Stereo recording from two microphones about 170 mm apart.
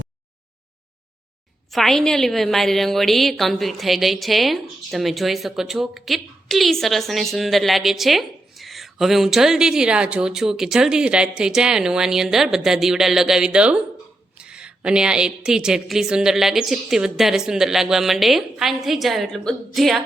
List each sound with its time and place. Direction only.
1.7 s a woman's voice: centre (ahead or behind)